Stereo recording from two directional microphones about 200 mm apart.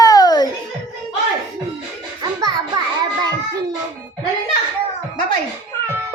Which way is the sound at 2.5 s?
20° right (ahead or behind).